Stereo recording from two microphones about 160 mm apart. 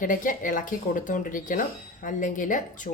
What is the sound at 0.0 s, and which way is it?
Speech, 55° left (ahead or behind).